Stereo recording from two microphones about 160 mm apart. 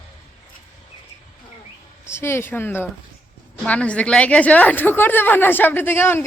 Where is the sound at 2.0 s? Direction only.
15° left (ahead or behind).